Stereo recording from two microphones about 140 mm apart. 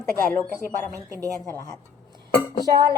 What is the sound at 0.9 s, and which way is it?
Speech, 25° right (ahead or behind).